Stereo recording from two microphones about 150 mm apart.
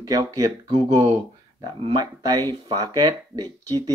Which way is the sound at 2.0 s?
25° right (ahead or behind).